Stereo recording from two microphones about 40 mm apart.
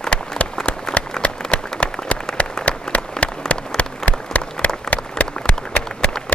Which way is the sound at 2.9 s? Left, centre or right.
Centre.